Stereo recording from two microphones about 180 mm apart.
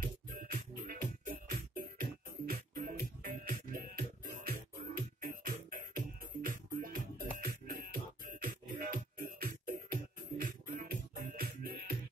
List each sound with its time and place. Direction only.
0.0 s music: 50° right (ahead or behind)